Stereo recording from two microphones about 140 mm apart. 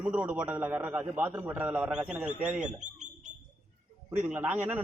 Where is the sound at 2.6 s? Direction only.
60° right (ahead or behind).